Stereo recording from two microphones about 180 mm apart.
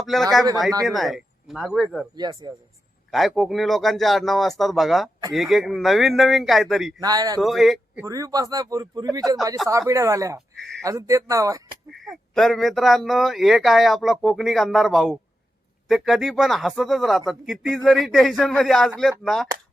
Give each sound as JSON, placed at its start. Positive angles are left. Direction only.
{"t": 0.0, "sound": "speech", "side_deg": 0}
{"t": 2.1, "sound": "a man's voice", "side_deg": -25}
{"t": 3.1, "sound": "speech", "side_deg": 0}
{"t": 7.0, "sound": "a man's voice", "side_deg": -20}
{"t": 7.4, "sound": "speech", "side_deg": 0}
{"t": 7.9, "sound": "a man's voice", "side_deg": -15}
{"t": 10.6, "sound": "speech", "side_deg": 0}
{"t": 10.8, "sound": "speech", "side_deg": -15}
{"t": 11.9, "sound": "speech", "side_deg": 0}